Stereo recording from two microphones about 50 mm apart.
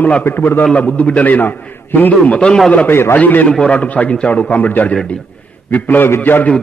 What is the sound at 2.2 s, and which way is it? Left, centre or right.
Speech, left.